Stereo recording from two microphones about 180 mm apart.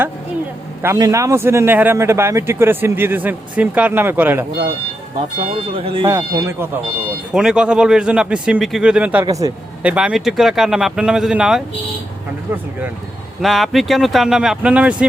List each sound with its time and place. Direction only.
0.8 s a man's voice: 15° right (ahead or behind)
5.7 s speech: 30° right (ahead or behind)
6.1 s a man's voice: 15° right (ahead or behind)
7.3 s a man's voice: 5° right (ahead or behind)
9.2 s a man's voice: 20° right (ahead or behind)
9.8 s a man's voice: 5° right (ahead or behind)
13.4 s a man's voice: centre (ahead or behind)